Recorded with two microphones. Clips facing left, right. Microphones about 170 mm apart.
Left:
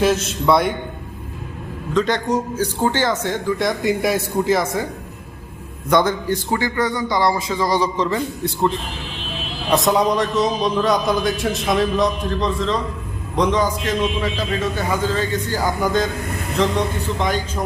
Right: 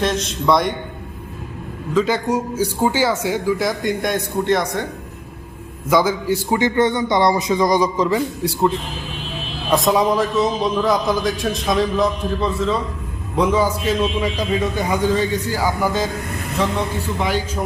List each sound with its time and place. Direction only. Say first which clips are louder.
0.0 s a man's voice: left 2 dB; 5° left (ahead or behind)
1.9 s a man's voice: right 1 dB; 5° right (ahead or behind)
5.9 s a man's voice: right 1 dB; 5° right (ahead or behind)
6.6 s a man's voice: right 4 dB; 25° right (ahead or behind); by 16.0 s 5° right (ahead or behind)